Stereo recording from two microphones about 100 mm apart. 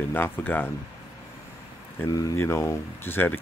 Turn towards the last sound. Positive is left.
turn(degrees=20)  # may be behind; listen again after turning